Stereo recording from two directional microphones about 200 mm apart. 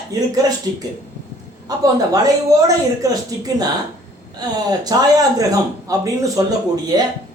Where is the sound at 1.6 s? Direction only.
20° right (ahead or behind).